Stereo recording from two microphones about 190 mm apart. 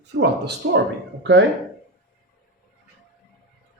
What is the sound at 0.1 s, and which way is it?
Speech, 60° right (ahead or behind).